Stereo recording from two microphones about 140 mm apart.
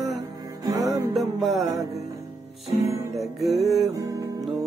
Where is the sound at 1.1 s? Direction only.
Centre (ahead or behind).